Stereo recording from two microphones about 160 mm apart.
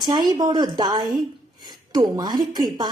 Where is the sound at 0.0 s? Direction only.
25° right (ahead or behind).